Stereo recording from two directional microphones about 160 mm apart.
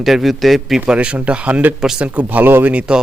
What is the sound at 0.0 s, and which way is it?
A man's voice, centre (ahead or behind).